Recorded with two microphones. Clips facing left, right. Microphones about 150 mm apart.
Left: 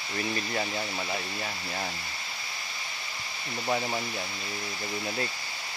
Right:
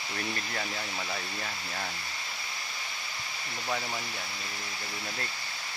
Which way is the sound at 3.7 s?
20° left (ahead or behind).